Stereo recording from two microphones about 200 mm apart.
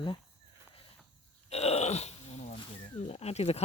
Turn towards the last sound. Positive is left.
turn(degrees=30)  # may be behind; listen again after turning